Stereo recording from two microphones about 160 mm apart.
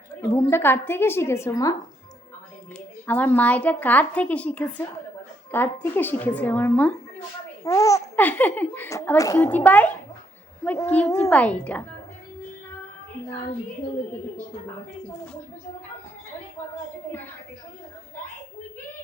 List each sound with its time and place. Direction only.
0.2 s speech: 15° left (ahead or behind)
3.1 s speech: 10° left (ahead or behind)